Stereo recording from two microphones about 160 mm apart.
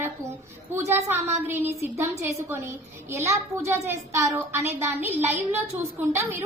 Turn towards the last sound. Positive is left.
turn(degrees=-15)  # may be behind; listen again after turning